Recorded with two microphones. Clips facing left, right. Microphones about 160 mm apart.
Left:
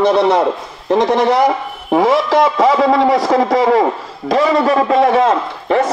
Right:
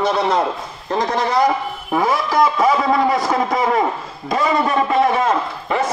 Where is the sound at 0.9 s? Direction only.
80° left.